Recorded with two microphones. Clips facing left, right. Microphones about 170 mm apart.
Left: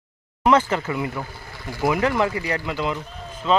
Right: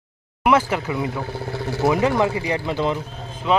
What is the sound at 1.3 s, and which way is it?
Vehicle, 70° right (ahead or behind).